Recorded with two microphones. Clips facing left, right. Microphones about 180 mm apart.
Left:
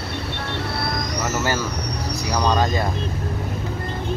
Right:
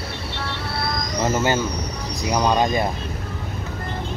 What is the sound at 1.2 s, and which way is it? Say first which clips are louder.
Vehicle: right 4 dB; 20° right (ahead or behind).